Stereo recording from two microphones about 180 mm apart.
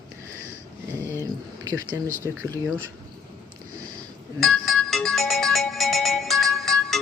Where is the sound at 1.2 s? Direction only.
20° right (ahead or behind).